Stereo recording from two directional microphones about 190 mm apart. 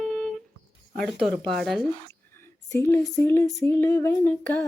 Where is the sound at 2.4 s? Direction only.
15° left (ahead or behind).